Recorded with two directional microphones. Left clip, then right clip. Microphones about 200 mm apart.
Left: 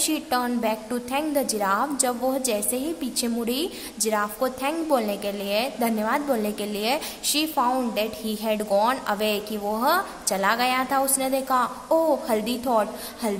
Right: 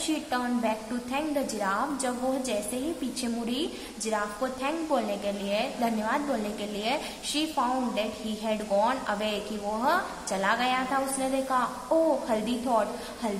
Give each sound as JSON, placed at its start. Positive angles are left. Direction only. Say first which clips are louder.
{"t": 0.0, "sound": "a woman's voice", "louder": "left 5 dB", "side_deg": 50}